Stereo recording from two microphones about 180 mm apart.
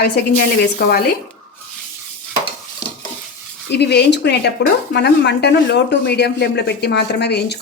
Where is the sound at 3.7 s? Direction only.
65° left (ahead or behind).